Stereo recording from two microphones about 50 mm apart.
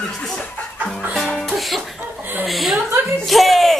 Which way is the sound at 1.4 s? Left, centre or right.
Centre.